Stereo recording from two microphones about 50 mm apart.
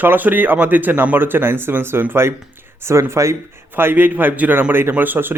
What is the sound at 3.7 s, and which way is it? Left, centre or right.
Speech, right.